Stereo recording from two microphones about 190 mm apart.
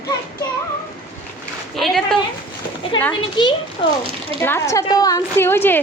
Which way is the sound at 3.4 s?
25° left (ahead or behind).